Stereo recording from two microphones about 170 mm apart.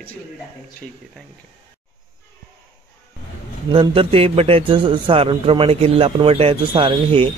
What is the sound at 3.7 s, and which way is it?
A man's voice, 30° right (ahead or behind).